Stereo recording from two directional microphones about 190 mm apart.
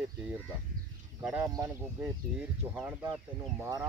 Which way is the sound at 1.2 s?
15° right (ahead or behind).